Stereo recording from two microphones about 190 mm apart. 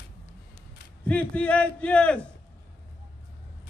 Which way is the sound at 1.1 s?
5° left (ahead or behind).